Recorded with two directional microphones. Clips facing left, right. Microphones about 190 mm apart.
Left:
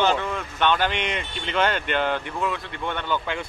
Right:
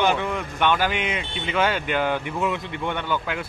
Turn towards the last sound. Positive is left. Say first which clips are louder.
# even
turn(degrees=-5)  # may be behind; listen again after turning